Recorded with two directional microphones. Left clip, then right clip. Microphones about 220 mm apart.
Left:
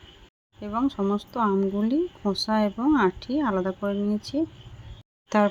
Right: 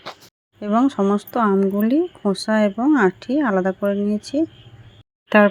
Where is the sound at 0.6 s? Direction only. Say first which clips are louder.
Right 8 dB; 15° right (ahead or behind).